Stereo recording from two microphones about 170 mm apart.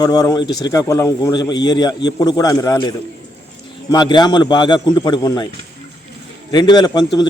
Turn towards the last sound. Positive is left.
turn(degrees=25)  # may be behind; listen again after turning